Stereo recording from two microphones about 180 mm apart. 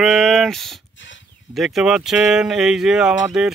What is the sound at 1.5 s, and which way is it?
Speech, centre (ahead or behind).